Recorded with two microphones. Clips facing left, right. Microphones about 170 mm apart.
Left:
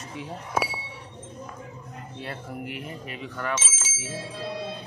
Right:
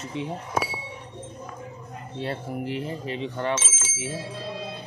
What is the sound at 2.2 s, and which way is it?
Speech, 25° right (ahead or behind).